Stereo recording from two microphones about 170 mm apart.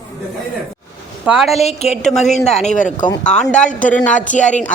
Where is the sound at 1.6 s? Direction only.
40° left (ahead or behind).